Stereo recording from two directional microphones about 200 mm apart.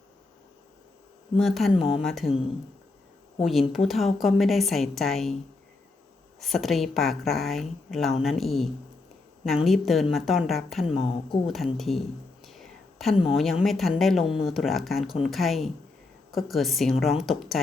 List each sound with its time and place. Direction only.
1.4 s a woman's voice: centre (ahead or behind)
1.7 s a woman's voice: 25° left (ahead or behind)
2.0 s a woman's voice: centre (ahead or behind)
3.4 s a woman's voice: centre (ahead or behind)
6.4 s a woman's voice: centre (ahead or behind)
10.8 s a woman's voice: 30° left (ahead or behind)
11.4 s a woman's voice: centre (ahead or behind)
12.5 s whispering: centre (ahead or behind)
13.3 s a woman's voice: centre (ahead or behind)